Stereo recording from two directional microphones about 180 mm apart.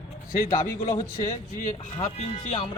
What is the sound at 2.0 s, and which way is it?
Speech, 45° left (ahead or behind).